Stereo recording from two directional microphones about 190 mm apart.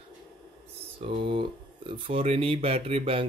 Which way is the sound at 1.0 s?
30° right (ahead or behind).